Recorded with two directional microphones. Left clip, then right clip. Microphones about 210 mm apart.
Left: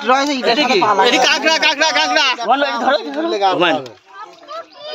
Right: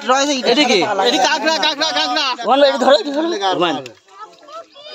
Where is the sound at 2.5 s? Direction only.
50° right (ahead or behind).